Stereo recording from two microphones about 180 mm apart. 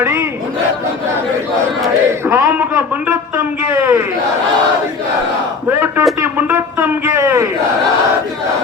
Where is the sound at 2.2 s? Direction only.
15° right (ahead or behind).